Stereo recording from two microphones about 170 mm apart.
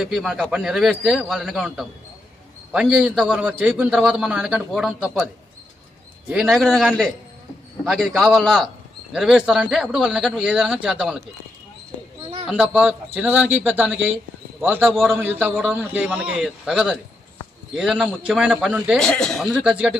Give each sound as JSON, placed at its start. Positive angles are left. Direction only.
{"t": 0.0, "sound": "a man's voice", "side_deg": 0}
{"t": 6.3, "sound": "a man's voice", "side_deg": 0}
{"t": 12.5, "sound": "a man's voice", "side_deg": -5}